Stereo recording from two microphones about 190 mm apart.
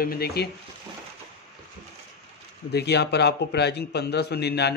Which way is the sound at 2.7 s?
60° left (ahead or behind).